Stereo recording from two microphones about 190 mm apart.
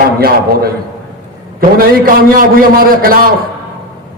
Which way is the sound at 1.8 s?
50° right (ahead or behind).